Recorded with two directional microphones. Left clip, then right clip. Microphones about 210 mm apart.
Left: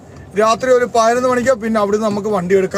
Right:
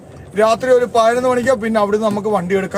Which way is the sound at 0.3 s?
15° left (ahead or behind).